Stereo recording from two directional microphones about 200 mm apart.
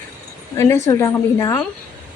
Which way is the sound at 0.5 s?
15° left (ahead or behind).